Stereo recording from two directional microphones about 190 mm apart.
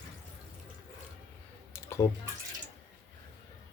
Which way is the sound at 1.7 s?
15° left (ahead or behind).